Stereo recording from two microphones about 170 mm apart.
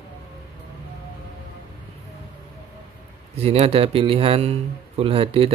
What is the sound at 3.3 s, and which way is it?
Speech, 35° right (ahead or behind).